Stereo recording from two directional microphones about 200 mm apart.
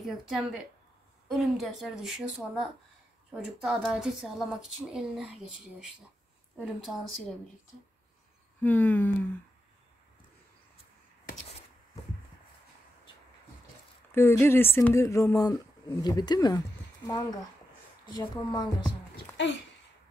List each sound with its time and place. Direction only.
0.0 s speech: centre (ahead or behind)
6.6 s speech: centre (ahead or behind)
8.6 s speech: 10° left (ahead or behind)
14.1 s speech: 10° left (ahead or behind)
19.3 s speech: 60° left (ahead or behind)